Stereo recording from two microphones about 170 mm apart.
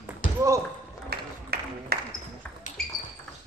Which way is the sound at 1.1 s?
70° right (ahead or behind).